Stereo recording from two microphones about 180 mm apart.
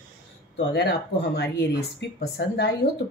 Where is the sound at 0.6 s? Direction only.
65° left (ahead or behind).